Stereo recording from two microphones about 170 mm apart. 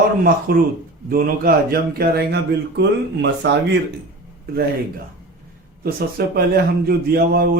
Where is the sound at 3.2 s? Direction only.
90° right.